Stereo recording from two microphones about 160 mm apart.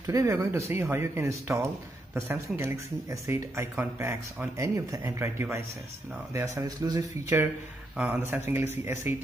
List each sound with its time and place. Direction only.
0.0 s speech: 20° right (ahead or behind)